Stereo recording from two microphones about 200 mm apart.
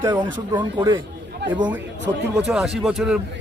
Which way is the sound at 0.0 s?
10° right (ahead or behind).